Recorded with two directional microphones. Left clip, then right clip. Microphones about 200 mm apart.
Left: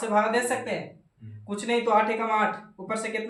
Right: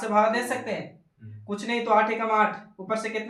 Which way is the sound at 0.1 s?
25° left (ahead or behind).